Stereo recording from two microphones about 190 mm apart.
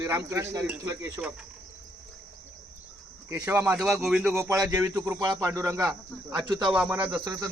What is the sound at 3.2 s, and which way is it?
Speech, 10° right (ahead or behind).